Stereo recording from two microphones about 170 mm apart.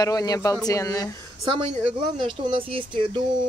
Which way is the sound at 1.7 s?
30° right (ahead or behind).